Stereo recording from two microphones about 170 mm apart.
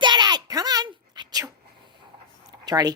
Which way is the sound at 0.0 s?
25° right (ahead or behind).